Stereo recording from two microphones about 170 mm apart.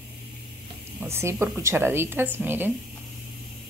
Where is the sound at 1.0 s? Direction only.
15° right (ahead or behind).